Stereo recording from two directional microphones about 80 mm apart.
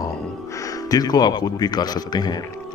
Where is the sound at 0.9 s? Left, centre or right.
Left.